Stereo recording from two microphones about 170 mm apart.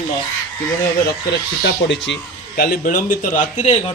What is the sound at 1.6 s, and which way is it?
Speech, 90° left.